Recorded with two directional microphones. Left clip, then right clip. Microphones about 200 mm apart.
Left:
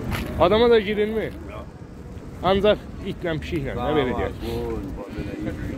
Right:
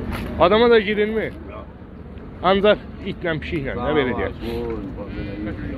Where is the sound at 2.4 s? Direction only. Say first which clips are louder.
Right 3 dB; 15° left (ahead or behind).